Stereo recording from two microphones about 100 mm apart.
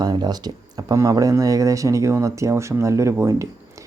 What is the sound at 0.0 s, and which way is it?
Speech, 45° right (ahead or behind).